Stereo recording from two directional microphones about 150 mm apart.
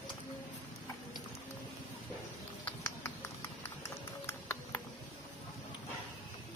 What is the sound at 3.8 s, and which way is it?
Music, 15° left (ahead or behind).